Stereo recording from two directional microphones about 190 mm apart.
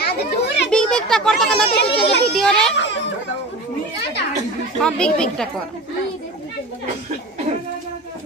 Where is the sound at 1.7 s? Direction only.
60° left (ahead or behind).